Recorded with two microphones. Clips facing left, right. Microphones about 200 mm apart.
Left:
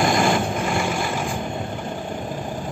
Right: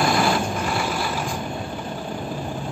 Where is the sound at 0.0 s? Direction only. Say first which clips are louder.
Left 1 dB; 15° left (ahead or behind).